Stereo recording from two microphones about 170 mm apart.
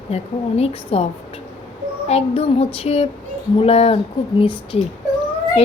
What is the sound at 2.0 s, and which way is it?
A woman's voice, 35° left (ahead or behind).